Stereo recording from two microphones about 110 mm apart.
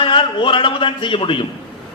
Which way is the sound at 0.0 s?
50° left (ahead or behind).